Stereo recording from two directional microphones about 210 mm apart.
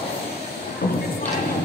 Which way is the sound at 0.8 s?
45° left (ahead or behind).